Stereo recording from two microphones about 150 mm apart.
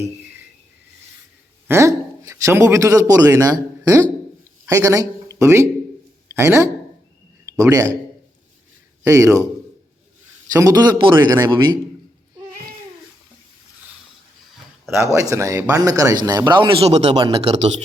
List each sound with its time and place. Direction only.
1.6 s a man's voice: 15° right (ahead or behind)
9.0 s a man's voice: 20° right (ahead or behind)
10.5 s a man's voice: 25° right (ahead or behind)
14.8 s a man's voice: 15° right (ahead or behind); by 17.7 s 40° right (ahead or behind)